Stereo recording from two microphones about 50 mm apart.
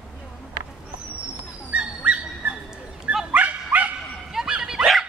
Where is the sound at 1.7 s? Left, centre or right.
Right.